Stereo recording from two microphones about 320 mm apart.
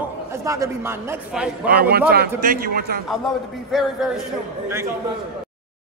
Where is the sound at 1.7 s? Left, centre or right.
Right.